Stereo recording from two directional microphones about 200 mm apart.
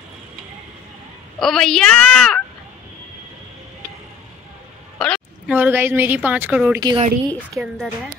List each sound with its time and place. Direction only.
1.4 s a woman's voice: 5° left (ahead or behind)
4.9 s a sound: 5° left (ahead or behind)
5.5 s a woman's voice: 10° right (ahead or behind)
6.8 s a woman's voice: 20° right (ahead or behind)
7.7 s a woman's voice: 5° right (ahead or behind)